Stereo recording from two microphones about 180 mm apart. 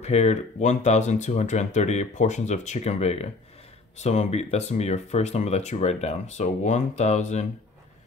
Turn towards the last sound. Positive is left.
turn(degrees=40)  # may be behind; listen again after turning